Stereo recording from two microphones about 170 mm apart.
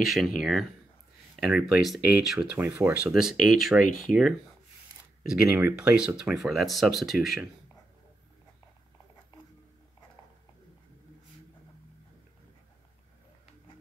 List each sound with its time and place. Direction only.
0.0 s speech: centre (ahead or behind)
1.3 s a sound: 5° right (ahead or behind)
1.6 s speech: 5° right (ahead or behind)
2.5 s speech: 15° right (ahead or behind)
2.9 s speech: 5° right (ahead or behind)